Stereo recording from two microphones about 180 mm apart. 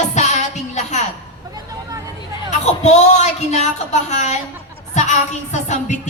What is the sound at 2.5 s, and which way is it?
Music, 40° left (ahead or behind).